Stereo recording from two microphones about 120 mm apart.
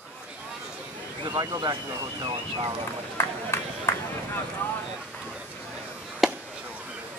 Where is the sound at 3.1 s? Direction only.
20° left (ahead or behind).